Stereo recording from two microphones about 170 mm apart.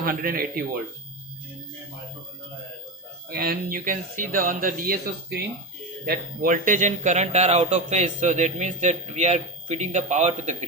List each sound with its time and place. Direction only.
0.0 s speech: 55° right (ahead or behind)
3.2 s speech: 60° right (ahead or behind); by 10.7 s 45° right (ahead or behind)